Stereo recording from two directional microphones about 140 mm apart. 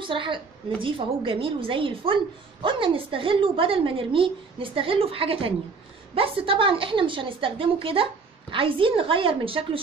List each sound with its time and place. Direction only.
0.0 s a woman's voice: 35° right (ahead or behind)